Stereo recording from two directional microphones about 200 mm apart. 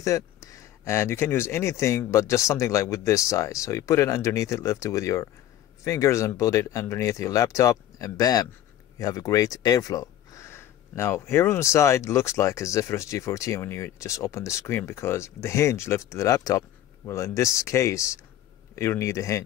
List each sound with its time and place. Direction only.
0.0 s speech: 15° left (ahead or behind)